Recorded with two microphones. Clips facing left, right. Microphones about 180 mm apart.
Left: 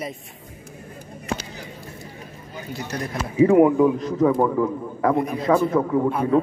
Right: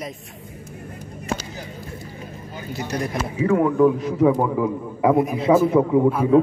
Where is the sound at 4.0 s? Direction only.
5° right (ahead or behind).